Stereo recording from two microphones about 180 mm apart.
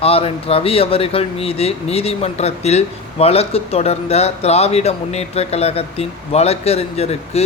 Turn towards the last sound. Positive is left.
turn(degrees=35)  # may be behind; listen again after turning